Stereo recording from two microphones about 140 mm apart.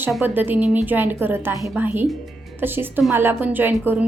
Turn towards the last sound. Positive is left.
turn(degrees=-15)  # may be behind; listen again after turning